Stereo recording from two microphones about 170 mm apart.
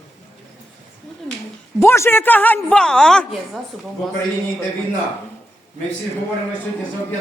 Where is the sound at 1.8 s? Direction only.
15° left (ahead or behind).